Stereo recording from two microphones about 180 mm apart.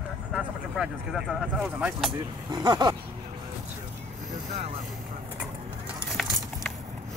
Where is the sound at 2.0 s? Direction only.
25° right (ahead or behind).